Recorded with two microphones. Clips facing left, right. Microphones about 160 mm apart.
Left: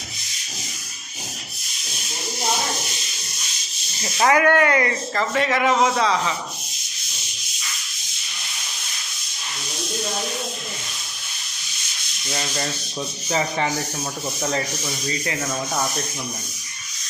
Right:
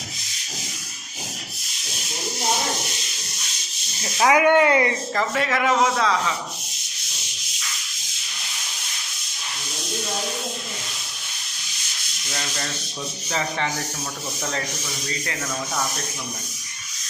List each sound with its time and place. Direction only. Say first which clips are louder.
4.0 s snake: even; 5° right (ahead or behind)
4.4 s a man's voice: right 3 dB; 20° right (ahead or behind); by 6.3 s centre (ahead or behind)
12.3 s sanding: left 4 dB; 20° left (ahead or behind)